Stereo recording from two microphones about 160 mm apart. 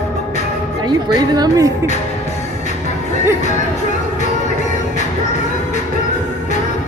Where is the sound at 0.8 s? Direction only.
25° right (ahead or behind).